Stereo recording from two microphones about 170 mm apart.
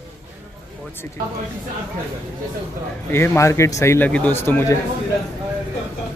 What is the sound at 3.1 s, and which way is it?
A man's voice, 15° left (ahead or behind).